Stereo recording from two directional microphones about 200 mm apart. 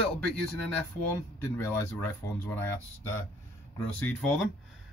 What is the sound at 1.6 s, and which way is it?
A man's voice, 10° left (ahead or behind).